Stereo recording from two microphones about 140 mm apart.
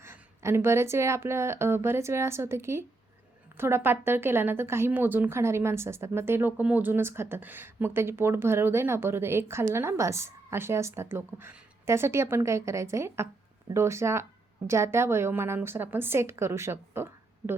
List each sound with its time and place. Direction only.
0.0 s a woman's voice: 15° right (ahead or behind)